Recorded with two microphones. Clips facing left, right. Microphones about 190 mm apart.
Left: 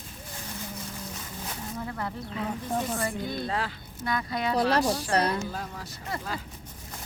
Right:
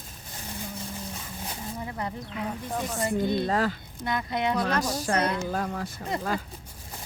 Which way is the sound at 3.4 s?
45° right (ahead or behind).